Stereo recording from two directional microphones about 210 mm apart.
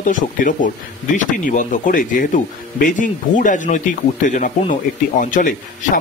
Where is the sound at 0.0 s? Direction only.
40° left (ahead or behind).